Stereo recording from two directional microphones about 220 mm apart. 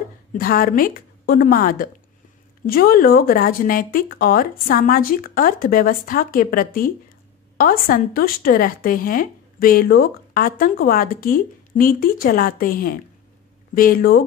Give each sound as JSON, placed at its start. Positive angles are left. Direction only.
{"t": 0.3, "sound": "speech", "side_deg": 40}